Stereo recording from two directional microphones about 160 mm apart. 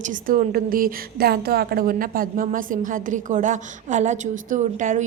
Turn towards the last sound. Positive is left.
turn(degrees=-50)  # may be behind; listen again after turning